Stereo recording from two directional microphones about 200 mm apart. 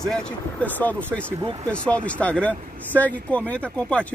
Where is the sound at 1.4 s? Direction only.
25° right (ahead or behind).